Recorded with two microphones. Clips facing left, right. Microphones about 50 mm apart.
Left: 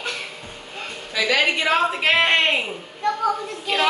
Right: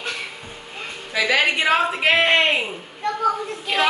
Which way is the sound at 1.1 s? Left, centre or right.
Centre.